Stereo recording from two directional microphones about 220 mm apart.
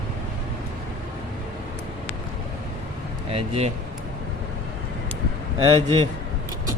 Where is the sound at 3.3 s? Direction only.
25° right (ahead or behind).